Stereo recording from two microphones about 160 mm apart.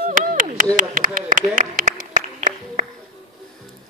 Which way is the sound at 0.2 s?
60° right (ahead or behind).